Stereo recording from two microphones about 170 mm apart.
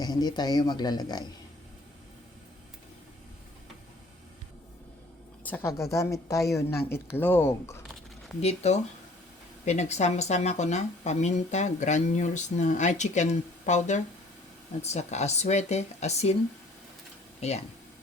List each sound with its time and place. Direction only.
0.0 s speech: 25° left (ahead or behind)
5.5 s a woman's voice: 15° left (ahead or behind)
8.4 s speech: 40° left (ahead or behind)